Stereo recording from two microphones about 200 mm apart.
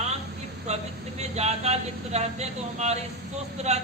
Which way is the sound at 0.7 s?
35° right (ahead or behind).